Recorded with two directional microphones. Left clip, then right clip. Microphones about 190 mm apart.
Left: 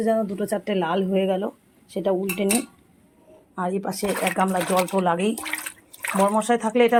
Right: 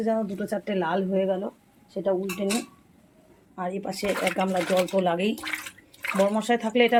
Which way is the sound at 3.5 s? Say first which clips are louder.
Left 4 dB; 25° left (ahead or behind).